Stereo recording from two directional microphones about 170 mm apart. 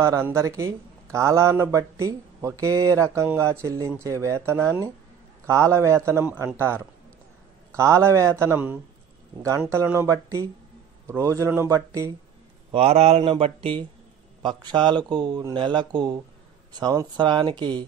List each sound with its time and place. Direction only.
0.0 s a man's voice: 15° right (ahead or behind)
12.7 s speech: 40° right (ahead or behind)